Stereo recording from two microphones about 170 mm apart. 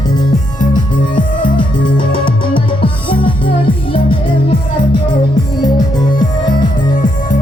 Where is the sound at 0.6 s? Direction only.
25° left (ahead or behind).